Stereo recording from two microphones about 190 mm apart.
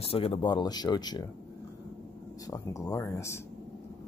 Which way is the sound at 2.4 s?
15° left (ahead or behind).